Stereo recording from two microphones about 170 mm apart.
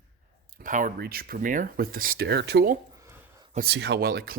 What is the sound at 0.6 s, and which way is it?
Speech, 50° right (ahead or behind).